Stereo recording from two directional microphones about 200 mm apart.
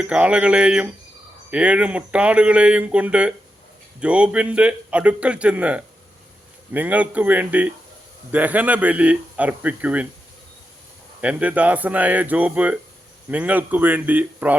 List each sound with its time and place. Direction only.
0.0 s a man's voice: 5° right (ahead or behind)
11.2 s a man's voice: 5° right (ahead or behind)